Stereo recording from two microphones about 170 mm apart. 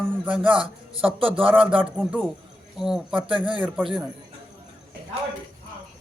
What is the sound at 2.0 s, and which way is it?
Music, centre (ahead or behind).